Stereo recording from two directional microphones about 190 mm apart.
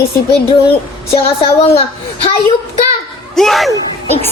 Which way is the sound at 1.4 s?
30° left (ahead or behind).